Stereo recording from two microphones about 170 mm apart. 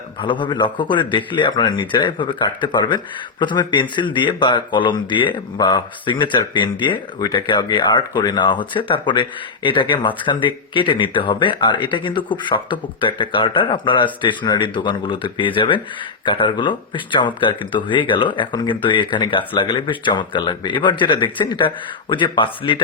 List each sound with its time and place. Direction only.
0.2 s speech: 30° left (ahead or behind)